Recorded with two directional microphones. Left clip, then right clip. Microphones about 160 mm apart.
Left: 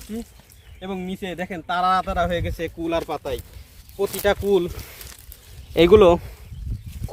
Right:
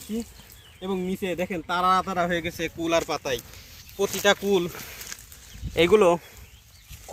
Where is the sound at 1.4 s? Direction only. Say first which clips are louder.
Left 3 dB; 45° left (ahead or behind); by 2.9 s 75° left (ahead or behind).